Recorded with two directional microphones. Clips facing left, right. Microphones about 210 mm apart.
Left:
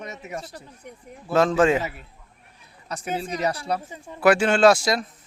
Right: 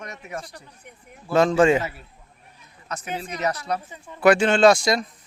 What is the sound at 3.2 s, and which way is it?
Speech, 30° left (ahead or behind).